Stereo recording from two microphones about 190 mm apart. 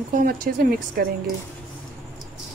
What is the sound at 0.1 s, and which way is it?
Speech, 45° right (ahead or behind).